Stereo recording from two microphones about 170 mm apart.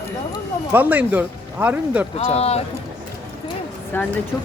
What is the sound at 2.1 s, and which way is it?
Speech, 35° left (ahead or behind).